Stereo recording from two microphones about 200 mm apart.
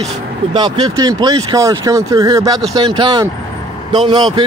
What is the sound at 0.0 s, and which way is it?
Speech, 25° right (ahead or behind).